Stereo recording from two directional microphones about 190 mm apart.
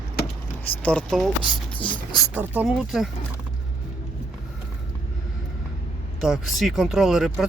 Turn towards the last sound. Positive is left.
turn(degrees=0)  # may be behind; listen again after turning